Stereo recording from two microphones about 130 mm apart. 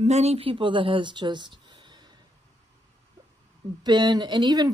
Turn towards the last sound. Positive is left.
turn(degrees=-30)  # may be behind; listen again after turning